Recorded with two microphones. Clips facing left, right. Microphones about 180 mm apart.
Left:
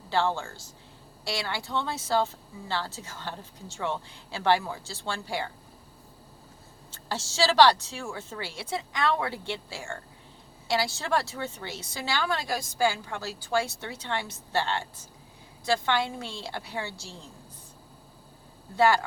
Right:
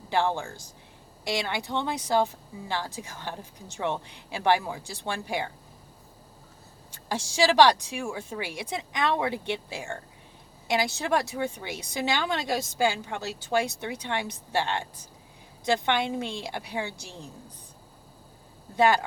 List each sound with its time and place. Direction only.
0.1 s a woman's voice: 15° right (ahead or behind)
6.9 s a woman's voice: 15° right (ahead or behind)